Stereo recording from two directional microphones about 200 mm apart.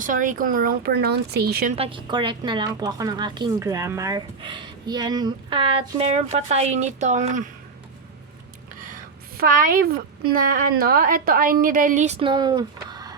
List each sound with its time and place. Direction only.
0.0 s speech: 40° right (ahead or behind)
1.7 s a woman's voice: 25° right (ahead or behind)
8.8 s a woman's voice: 45° right (ahead or behind); by 13.1 s 20° right (ahead or behind)